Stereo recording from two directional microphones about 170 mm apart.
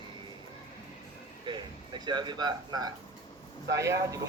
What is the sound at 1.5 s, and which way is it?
Speech, 25° right (ahead or behind).